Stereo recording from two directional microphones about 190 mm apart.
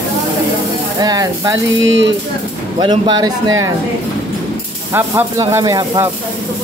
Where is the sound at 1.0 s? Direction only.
20° right (ahead or behind).